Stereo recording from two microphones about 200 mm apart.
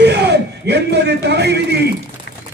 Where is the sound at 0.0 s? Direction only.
55° right (ahead or behind).